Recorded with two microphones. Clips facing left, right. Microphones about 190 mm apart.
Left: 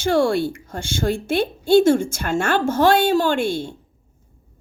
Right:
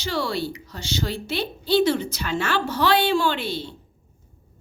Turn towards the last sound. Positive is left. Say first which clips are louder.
# left 5 dB
turn(degrees=50)  # may be behind; listen again after turning